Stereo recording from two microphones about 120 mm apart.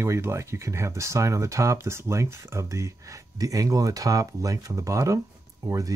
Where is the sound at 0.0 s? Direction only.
20° right (ahead or behind).